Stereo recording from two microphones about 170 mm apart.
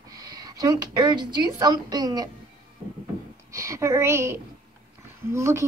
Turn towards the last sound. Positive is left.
turn(degrees=-15)  # may be behind; listen again after turning